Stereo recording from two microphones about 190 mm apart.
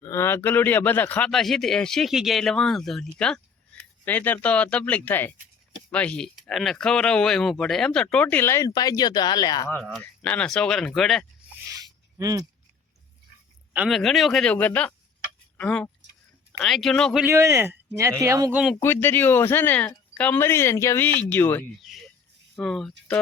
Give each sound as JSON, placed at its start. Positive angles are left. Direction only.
{"t": 0.0, "sound": "speech", "side_deg": 15}
{"t": 9.8, "sound": "speech", "side_deg": 5}
{"t": 11.6, "sound": "a sound", "side_deg": -15}
{"t": 13.7, "sound": "speech", "side_deg": 0}
{"t": 17.2, "sound": "speech", "side_deg": -15}
{"t": 18.5, "sound": "speech", "side_deg": 0}
{"t": 18.8, "sound": "speech", "side_deg": 10}
{"t": 21.8, "sound": "a sound", "side_deg": 0}
{"t": 22.5, "sound": "speech", "side_deg": 0}